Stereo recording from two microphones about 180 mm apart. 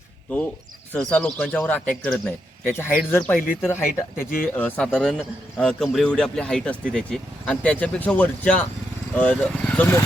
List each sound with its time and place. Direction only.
0.9 s a man's voice: 5° left (ahead or behind)
4.2 s speech: 50° left (ahead or behind)
4.5 s a man's voice: 10° left (ahead or behind)